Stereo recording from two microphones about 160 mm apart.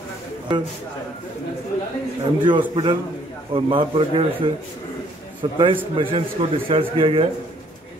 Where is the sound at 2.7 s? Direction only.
30° right (ahead or behind).